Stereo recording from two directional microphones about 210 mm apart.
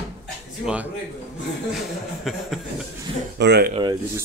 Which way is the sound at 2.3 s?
Centre (ahead or behind).